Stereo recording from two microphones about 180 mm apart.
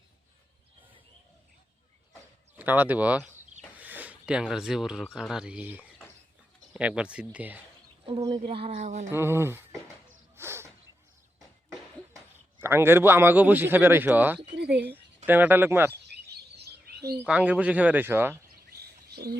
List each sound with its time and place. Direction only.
2.6 s a man's voice: 10° right (ahead or behind)
3.8 s a sound: 10° right (ahead or behind)
5.1 s a man's voice: 5° right (ahead or behind)
8.0 s speech: 30° right (ahead or behind)
9.1 s a man's voice: 15° right (ahead or behind)
10.3 s a sound: 15° right (ahead or behind)
11.3 s a sound: centre (ahead or behind)
12.5 s a man's voice: 10° right (ahead or behind)
14.6 s speech: 65° right (ahead or behind)
15.3 s a man's voice: 10° right (ahead or behind)
16.0 s bird: 65° right (ahead or behind)
17.2 s a man's voice: 5° right (ahead or behind)
18.7 s bird: 60° right (ahead or behind)